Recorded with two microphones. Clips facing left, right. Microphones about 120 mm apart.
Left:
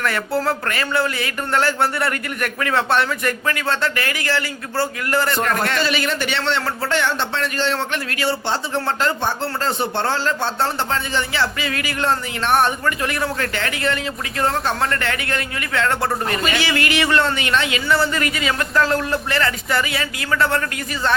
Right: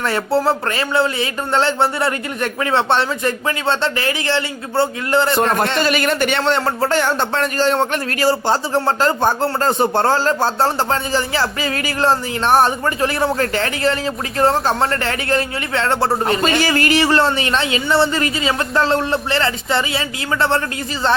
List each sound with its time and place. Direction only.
0.0 s speech: 30° right (ahead or behind)
5.8 s speech: 50° right (ahead or behind); by 20.6 s 30° right (ahead or behind)